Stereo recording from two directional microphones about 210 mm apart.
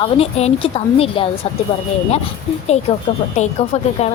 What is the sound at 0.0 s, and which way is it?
A woman's voice, 30° left (ahead or behind).